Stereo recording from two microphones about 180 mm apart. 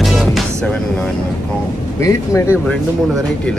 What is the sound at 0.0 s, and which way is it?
Music, centre (ahead or behind).